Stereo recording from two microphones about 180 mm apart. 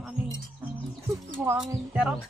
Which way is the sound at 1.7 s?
Centre (ahead or behind).